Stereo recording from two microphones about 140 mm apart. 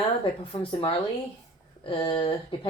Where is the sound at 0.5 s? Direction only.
40° left (ahead or behind).